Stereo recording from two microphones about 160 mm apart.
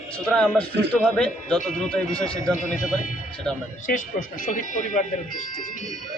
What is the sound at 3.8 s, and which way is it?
Speech, 55° left (ahead or behind).